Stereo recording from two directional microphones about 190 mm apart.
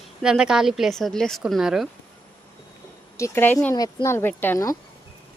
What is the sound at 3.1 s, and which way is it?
Speech, 15° left (ahead or behind).